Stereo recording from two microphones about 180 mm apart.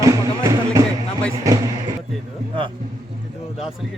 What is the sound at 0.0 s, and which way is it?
Music, 15° right (ahead or behind).